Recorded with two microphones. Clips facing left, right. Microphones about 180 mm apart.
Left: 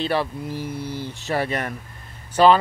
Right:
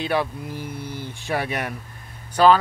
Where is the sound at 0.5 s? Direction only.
55° right (ahead or behind).